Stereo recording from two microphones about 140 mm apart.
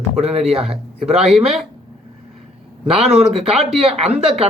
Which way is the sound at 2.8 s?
5° right (ahead or behind).